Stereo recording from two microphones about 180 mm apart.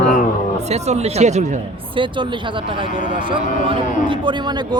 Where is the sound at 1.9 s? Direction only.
30° right (ahead or behind).